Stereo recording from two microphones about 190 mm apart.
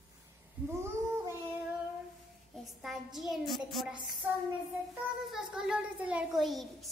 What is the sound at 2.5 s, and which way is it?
A child's voice, centre (ahead or behind).